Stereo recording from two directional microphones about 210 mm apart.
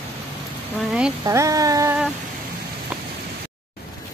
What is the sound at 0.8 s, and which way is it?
Speech, centre (ahead or behind).